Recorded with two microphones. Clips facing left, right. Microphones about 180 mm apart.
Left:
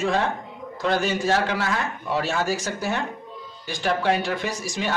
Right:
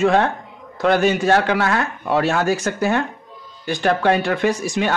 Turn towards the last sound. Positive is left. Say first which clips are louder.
# right 8 dB
turn(degrees=-60)  # may be behind; listen again after turning